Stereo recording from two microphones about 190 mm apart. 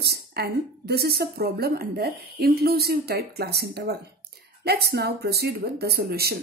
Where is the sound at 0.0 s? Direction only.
55° right (ahead or behind).